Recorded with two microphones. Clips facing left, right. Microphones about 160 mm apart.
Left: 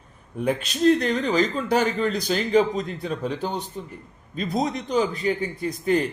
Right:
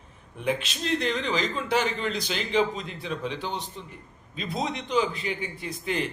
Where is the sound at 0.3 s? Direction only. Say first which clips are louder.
Left 5 dB; 45° left (ahead or behind).